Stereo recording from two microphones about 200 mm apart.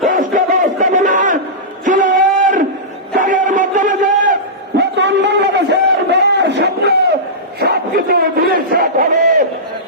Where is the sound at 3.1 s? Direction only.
40° right (ahead or behind).